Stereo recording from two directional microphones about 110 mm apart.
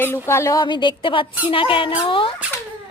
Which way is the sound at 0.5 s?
45° left (ahead or behind).